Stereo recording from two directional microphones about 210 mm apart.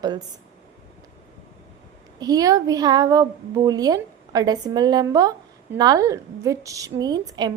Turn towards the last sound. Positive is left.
turn(degrees=-20)  # may be behind; listen again after turning